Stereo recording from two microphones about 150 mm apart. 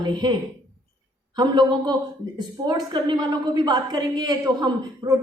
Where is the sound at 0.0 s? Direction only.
30° right (ahead or behind).